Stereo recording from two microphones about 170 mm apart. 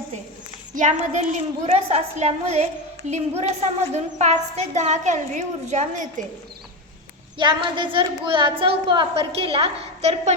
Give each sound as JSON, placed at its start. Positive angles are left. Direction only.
{"t": 0.7, "sound": "a woman's voice", "side_deg": -45}
{"t": 7.3, "sound": "a woman's voice", "side_deg": -30}